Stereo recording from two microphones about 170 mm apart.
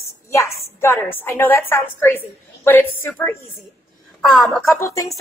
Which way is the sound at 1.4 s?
15° left (ahead or behind).